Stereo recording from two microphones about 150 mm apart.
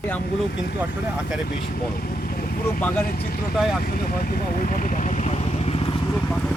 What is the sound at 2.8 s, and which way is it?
Speech, 10° left (ahead or behind).